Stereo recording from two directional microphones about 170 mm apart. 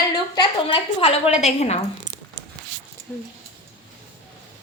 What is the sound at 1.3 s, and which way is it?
Speech, 40° left (ahead or behind).